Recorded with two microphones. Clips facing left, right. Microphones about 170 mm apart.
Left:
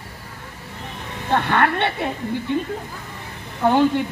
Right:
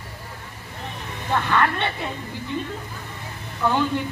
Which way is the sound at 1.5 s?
55° left (ahead or behind).